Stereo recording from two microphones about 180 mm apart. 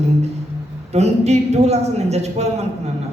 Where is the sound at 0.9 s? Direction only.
35° right (ahead or behind).